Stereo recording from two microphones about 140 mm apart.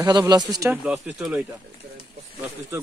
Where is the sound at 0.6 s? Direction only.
5° right (ahead or behind).